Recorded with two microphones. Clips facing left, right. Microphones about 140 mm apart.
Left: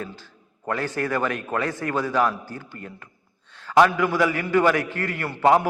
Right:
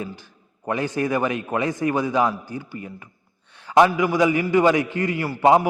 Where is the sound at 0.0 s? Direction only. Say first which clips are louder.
Right 2 dB; 15° right (ahead or behind).